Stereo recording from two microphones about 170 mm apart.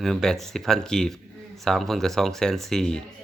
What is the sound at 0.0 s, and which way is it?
Speech, centre (ahead or behind).